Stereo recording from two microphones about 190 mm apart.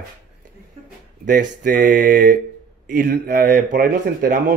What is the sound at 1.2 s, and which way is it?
Speech, 45° right (ahead or behind).